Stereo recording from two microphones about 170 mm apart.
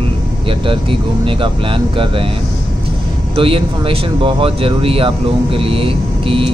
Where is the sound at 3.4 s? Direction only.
30° right (ahead or behind).